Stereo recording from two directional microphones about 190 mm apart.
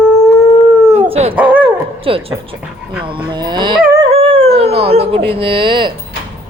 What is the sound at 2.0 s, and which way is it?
Speech, 30° right (ahead or behind).